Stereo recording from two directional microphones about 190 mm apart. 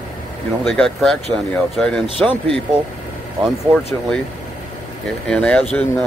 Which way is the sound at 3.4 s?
5° right (ahead or behind).